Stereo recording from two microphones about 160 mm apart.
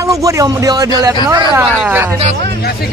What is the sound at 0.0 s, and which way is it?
Speech, 20° right (ahead or behind).